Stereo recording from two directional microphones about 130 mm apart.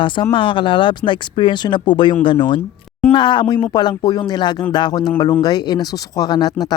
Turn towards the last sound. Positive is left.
turn(degrees=30)  # may be behind; listen again after turning